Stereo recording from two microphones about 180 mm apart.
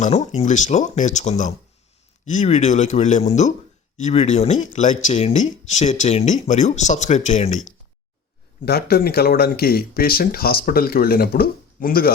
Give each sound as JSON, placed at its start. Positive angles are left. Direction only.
{"t": 0.0, "sound": "speech", "side_deg": 40}
{"t": 8.6, "sound": "speech", "side_deg": 60}